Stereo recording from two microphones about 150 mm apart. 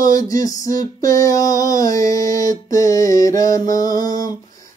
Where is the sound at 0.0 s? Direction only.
25° left (ahead or behind).